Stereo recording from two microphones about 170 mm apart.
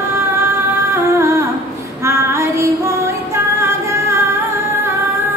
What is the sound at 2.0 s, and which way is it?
Female singing, 15° right (ahead or behind).